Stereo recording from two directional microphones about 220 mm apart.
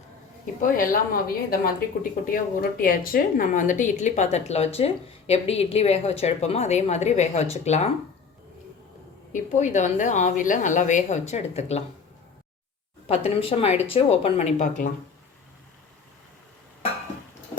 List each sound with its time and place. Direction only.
0.6 s a woman's voice: 40° left (ahead or behind)
9.3 s a woman's voice: 35° left (ahead or behind)
13.1 s speech: 25° left (ahead or behind)